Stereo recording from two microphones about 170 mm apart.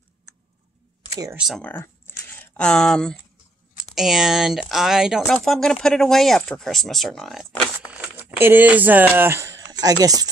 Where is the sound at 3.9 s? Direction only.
Centre (ahead or behind).